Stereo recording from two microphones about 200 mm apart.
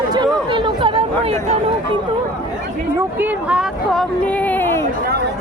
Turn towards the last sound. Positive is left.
turn(degrees=10)  # may be behind; listen again after turning